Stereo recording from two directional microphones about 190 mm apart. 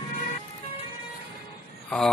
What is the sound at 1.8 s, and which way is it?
Speech, 5° left (ahead or behind).